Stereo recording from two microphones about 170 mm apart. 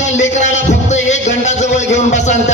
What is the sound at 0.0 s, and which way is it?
Music, 45° left (ahead or behind).